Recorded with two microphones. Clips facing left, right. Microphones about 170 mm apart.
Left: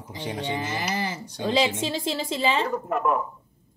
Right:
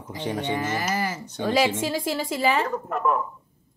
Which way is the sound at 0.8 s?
30° left (ahead or behind).